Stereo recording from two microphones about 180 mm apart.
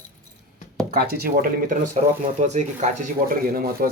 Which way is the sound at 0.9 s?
60° right (ahead or behind).